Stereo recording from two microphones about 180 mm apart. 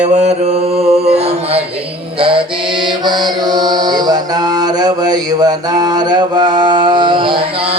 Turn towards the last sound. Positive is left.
turn(degrees=-30)  # may be behind; listen again after turning